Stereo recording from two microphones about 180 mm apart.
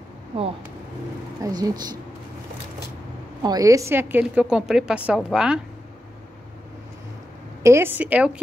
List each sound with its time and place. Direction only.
1.4 s speech: 20° right (ahead or behind)
3.4 s a woman's voice: 20° right (ahead or behind)
7.6 s a woman's voice: 15° right (ahead or behind)